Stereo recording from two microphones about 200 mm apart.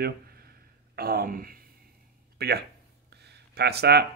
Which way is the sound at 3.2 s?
55° right (ahead or behind).